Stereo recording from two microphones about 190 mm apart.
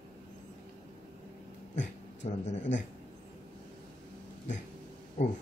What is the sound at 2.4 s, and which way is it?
Speech, 35° left (ahead or behind).